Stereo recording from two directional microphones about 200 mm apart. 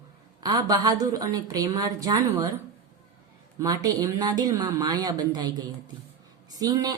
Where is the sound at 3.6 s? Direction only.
15° right (ahead or behind).